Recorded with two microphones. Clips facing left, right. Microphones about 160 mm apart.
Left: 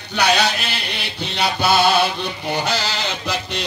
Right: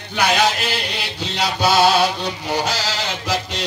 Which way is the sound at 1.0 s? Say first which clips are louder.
Even; 60° left (ahead or behind).